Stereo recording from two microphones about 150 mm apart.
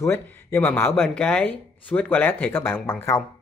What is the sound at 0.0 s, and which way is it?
Speech, 15° left (ahead or behind).